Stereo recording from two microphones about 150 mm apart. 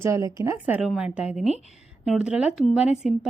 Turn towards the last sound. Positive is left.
turn(degrees=-5)  # may be behind; listen again after turning